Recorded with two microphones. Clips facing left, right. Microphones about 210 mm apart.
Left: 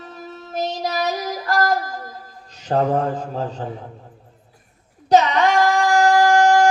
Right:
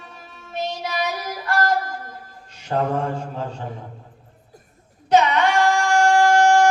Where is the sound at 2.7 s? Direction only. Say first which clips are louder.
Left 3 dB; 35° left (ahead or behind).